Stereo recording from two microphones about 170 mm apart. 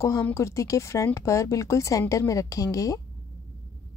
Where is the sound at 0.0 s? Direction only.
15° left (ahead or behind).